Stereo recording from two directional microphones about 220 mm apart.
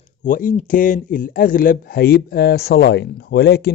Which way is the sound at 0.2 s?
35° left (ahead or behind).